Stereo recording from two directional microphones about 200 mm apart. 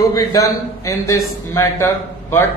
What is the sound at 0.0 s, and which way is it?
Speech, 20° left (ahead or behind).